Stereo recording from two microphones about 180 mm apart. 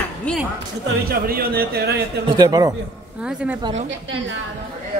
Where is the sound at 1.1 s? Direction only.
55° right (ahead or behind).